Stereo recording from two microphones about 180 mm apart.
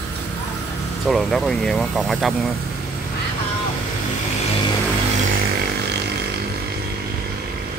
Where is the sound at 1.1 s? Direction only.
Centre (ahead or behind).